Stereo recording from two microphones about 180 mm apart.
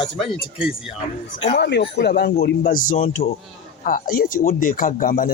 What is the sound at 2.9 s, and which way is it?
Speech, 30° left (ahead or behind).